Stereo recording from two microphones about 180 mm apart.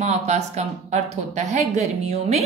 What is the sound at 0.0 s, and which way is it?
Speech, 40° right (ahead or behind).